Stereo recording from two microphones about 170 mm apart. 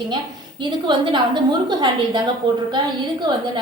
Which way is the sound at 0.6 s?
25° right (ahead or behind).